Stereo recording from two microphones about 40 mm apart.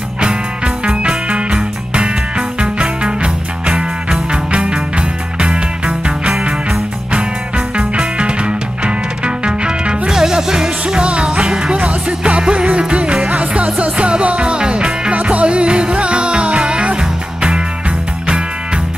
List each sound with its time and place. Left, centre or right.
0.8 s music: right